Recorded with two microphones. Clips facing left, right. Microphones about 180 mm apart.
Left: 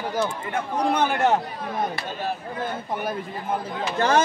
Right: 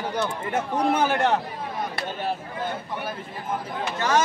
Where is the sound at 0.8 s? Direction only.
5° right (ahead or behind).